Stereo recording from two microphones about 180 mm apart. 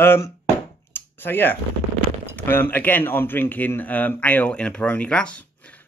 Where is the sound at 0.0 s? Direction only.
10° left (ahead or behind).